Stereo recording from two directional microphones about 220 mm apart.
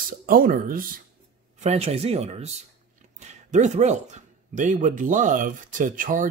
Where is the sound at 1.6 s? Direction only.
30° right (ahead or behind).